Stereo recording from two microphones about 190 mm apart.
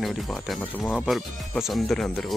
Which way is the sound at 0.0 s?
Centre (ahead or behind).